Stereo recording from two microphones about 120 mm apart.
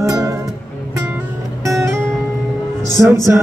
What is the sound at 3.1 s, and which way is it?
Music, 25° right (ahead or behind).